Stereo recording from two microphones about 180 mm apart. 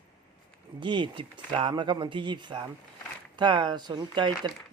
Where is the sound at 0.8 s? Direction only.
25° right (ahead or behind).